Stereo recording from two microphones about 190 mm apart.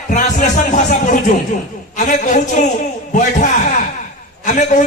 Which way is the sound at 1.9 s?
40° left (ahead or behind).